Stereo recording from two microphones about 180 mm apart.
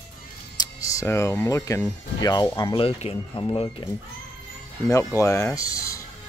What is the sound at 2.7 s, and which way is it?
Speech, 30° left (ahead or behind).